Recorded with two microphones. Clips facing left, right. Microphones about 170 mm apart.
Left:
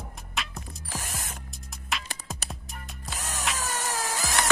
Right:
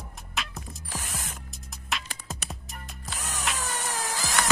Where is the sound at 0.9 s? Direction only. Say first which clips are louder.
Left 1 dB; 45° left (ahead or behind).